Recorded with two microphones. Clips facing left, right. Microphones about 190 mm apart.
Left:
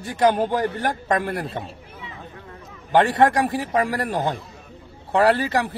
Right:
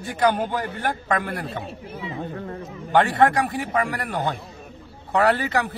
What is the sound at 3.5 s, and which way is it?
A man's voice, 35° left (ahead or behind).